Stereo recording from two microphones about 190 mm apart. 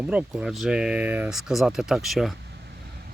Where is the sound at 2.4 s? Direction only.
60° right (ahead or behind).